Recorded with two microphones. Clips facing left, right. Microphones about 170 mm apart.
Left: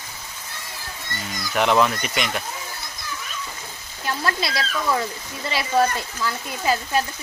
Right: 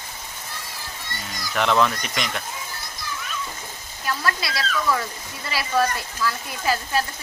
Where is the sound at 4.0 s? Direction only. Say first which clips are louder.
Left 1 dB; 25° left (ahead or behind).